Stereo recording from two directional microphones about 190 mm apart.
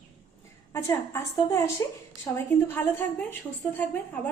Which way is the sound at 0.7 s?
15° left (ahead or behind).